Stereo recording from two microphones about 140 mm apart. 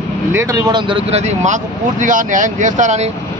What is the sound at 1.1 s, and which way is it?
Speech, 55° right (ahead or behind).